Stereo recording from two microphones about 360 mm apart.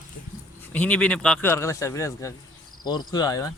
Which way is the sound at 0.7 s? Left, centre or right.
Centre.